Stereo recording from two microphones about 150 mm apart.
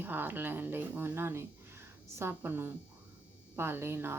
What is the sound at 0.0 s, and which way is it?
Speech, 15° right (ahead or behind).